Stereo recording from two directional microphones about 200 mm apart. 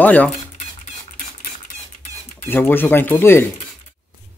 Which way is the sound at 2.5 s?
10° left (ahead or behind).